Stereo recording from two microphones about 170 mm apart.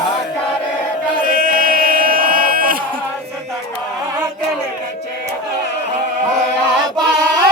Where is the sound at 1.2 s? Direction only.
55° right (ahead or behind).